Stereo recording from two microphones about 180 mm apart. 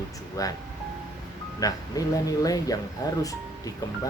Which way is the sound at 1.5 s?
20° left (ahead or behind).